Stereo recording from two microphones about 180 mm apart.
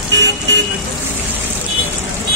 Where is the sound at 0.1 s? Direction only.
75° right (ahead or behind).